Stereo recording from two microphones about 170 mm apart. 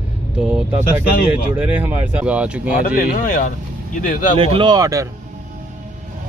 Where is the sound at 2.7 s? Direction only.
55° left (ahead or behind).